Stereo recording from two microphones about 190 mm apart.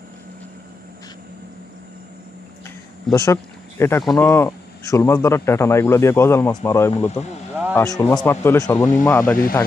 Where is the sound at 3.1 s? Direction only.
15° left (ahead or behind).